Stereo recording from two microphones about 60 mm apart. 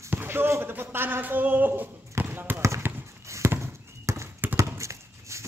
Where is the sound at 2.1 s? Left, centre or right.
Right.